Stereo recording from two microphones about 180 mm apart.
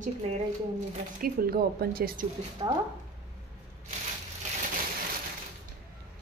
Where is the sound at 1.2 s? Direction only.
55° right (ahead or behind).